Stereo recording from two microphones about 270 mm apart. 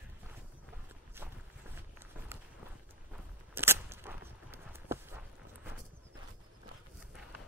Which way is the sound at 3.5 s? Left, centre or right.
Centre.